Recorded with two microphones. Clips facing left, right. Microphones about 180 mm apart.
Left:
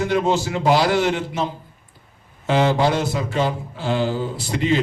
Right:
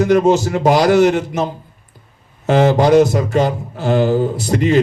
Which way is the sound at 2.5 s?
45° right (ahead or behind).